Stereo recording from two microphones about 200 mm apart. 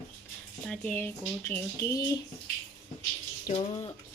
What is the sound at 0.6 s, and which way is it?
Speech, 5° left (ahead or behind).